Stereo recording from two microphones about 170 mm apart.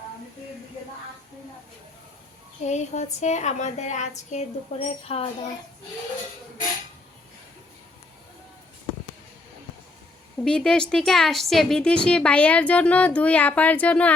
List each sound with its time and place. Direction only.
2.6 s a woman's voice: 45° left (ahead or behind)
10.4 s a woman's voice: 5° left (ahead or behind)